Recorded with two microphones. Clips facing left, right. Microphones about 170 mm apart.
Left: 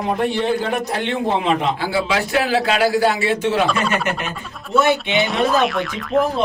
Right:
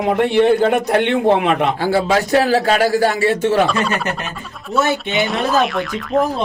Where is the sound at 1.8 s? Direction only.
45° right (ahead or behind).